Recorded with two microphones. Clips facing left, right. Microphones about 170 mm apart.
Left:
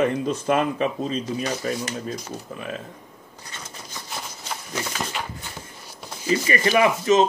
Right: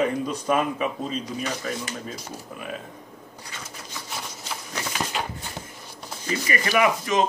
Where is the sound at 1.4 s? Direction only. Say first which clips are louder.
Left 3 dB; 35° left (ahead or behind).